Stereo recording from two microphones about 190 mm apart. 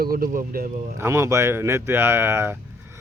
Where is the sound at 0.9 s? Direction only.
15° right (ahead or behind).